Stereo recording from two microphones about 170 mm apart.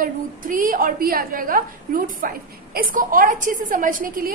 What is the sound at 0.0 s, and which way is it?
A woman's voice, 55° right (ahead or behind).